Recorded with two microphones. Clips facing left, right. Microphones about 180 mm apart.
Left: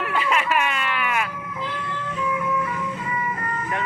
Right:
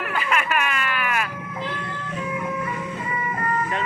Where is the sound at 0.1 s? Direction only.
25° left (ahead or behind).